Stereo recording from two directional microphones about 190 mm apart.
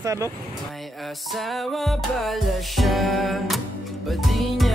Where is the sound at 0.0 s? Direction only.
15° right (ahead or behind).